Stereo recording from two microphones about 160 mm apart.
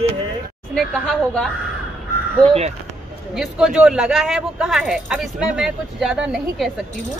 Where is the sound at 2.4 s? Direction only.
40° right (ahead or behind).